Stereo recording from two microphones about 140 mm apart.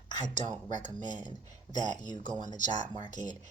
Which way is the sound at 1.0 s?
30° left (ahead or behind).